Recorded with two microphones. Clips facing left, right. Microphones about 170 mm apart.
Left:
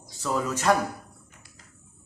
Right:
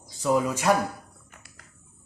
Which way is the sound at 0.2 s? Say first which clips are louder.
Right 4 dB; 15° right (ahead or behind).